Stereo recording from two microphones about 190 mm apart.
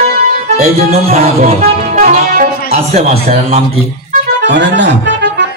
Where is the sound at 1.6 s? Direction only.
45° right (ahead or behind).